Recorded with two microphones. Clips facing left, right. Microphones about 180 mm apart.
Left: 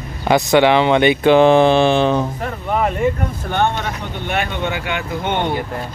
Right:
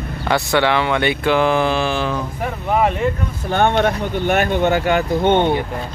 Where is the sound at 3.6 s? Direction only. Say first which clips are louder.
Right 5 dB; 55° right (ahead or behind); by 5.0 s 40° right (ahead or behind).